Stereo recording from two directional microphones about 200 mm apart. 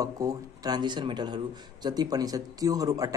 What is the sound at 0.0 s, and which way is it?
A man's voice, 20° right (ahead or behind).